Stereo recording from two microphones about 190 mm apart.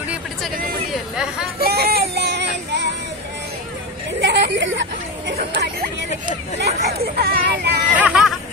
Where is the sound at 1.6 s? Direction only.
55° right (ahead or behind).